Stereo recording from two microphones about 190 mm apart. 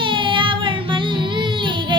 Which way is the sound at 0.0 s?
25° right (ahead or behind).